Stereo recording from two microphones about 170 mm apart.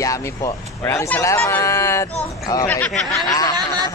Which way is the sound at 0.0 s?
20° left (ahead or behind).